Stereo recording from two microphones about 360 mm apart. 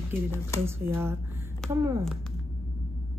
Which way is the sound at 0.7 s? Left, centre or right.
Centre.